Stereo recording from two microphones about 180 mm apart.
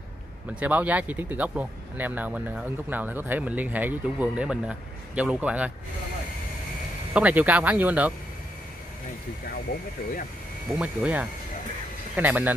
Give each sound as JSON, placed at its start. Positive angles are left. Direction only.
{"t": 0.6, "sound": "speech", "side_deg": -10}
{"t": 7.2, "sound": "speech", "side_deg": -10}
{"t": 9.5, "sound": "speech", "side_deg": 60}
{"t": 10.8, "sound": "speech", "side_deg": -5}